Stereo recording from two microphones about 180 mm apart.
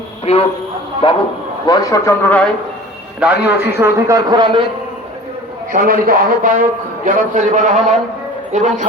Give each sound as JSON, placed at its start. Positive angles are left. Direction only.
{"t": 0.3, "sound": "a man's voice", "side_deg": 35}
{"t": 3.2, "sound": "a man's voice", "side_deg": -5}
{"t": 5.7, "sound": "a man's voice", "side_deg": -50}